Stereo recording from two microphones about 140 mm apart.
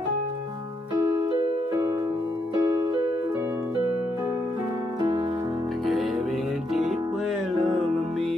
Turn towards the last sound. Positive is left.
turn(degrees=0)  # may be behind; listen again after turning